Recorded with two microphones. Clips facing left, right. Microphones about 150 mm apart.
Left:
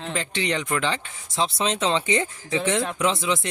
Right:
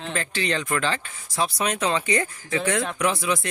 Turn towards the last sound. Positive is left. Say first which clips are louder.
# even
turn(degrees=20)  # may be behind; listen again after turning